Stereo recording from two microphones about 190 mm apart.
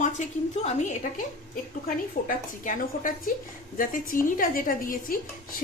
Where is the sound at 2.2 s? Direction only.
45° left (ahead or behind).